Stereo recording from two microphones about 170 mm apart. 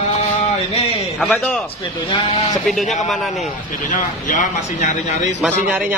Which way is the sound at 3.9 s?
50° left (ahead or behind).